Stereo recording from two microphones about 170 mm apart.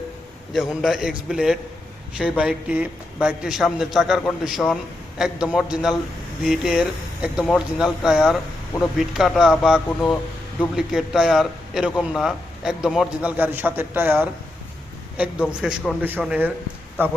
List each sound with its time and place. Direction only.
0.8 s a man's voice: centre (ahead or behind)